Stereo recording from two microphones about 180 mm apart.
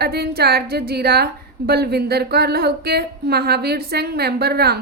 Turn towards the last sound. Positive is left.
turn(degrees=-60)  # may be behind; listen again after turning